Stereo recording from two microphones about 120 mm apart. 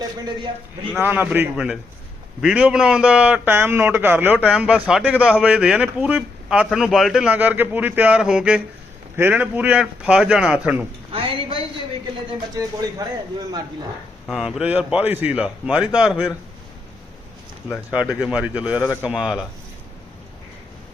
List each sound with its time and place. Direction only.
0.0 s a man's voice: 35° right (ahead or behind)
0.9 s a man's voice: 15° right (ahead or behind)
1.5 s a man's voice: 5° right (ahead or behind)
11.1 s a sound: 50° right (ahead or behind)
14.3 s a man's voice: 5° right (ahead or behind)
17.9 s a man's voice: 10° right (ahead or behind)